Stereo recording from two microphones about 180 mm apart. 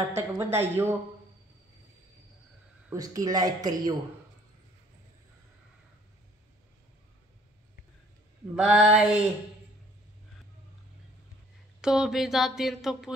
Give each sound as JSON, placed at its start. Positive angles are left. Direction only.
{"t": 0.1, "sound": "speech", "side_deg": -15}
{"t": 2.9, "sound": "speech", "side_deg": -20}
{"t": 8.5, "sound": "speech", "side_deg": 0}
{"t": 11.8, "sound": "speech", "side_deg": -5}